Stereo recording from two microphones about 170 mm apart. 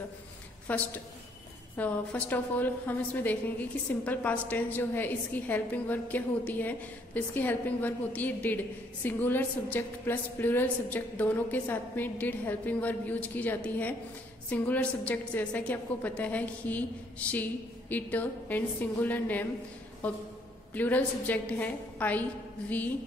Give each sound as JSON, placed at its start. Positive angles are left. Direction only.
{"t": 0.7, "sound": "a woman's voice", "side_deg": 10}